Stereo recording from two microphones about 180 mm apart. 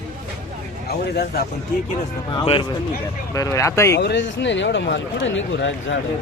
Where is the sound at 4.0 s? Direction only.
75° left (ahead or behind); by 5.9 s 90° left.